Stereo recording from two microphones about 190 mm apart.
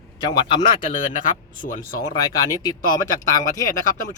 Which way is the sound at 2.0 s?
20° left (ahead or behind).